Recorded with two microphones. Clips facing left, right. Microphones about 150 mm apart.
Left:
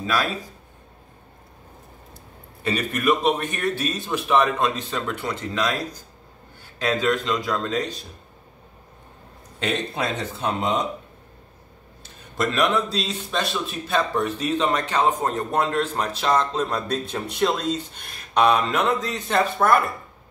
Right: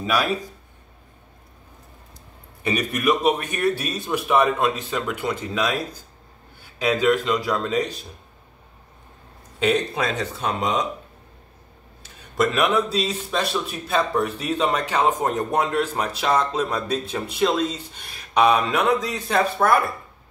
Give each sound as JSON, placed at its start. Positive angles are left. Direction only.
{"t": 2.6, "sound": "a man's voice", "side_deg": -15}
{"t": 6.8, "sound": "a man's voice", "side_deg": -5}
{"t": 9.6, "sound": "speech", "side_deg": 0}
{"t": 12.4, "sound": "a man's voice", "side_deg": -5}